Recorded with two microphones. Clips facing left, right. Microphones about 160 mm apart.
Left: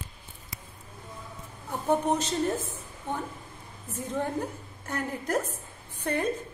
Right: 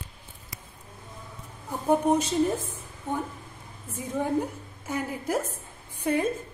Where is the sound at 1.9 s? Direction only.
10° right (ahead or behind).